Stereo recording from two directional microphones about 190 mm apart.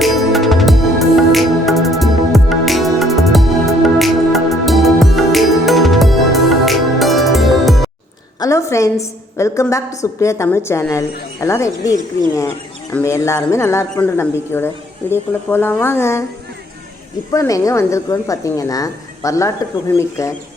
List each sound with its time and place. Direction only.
0.0 s music: centre (ahead or behind)
8.4 s a woman's voice: 15° left (ahead or behind)
17.3 s a woman's voice: 15° left (ahead or behind)